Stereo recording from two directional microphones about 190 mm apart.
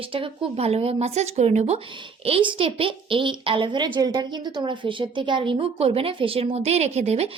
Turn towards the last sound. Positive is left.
turn(degrees=-35)  # may be behind; listen again after turning